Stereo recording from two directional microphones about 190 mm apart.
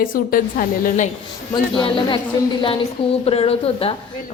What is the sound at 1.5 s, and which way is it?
Speech, 25° left (ahead or behind).